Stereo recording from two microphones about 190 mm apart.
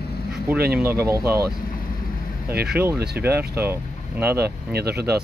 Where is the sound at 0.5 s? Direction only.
55° right (ahead or behind).